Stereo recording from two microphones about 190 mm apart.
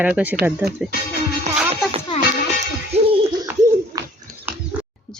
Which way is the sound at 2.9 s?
35° right (ahead or behind).